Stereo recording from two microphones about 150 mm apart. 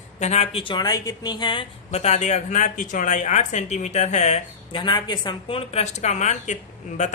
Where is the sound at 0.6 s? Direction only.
30° left (ahead or behind).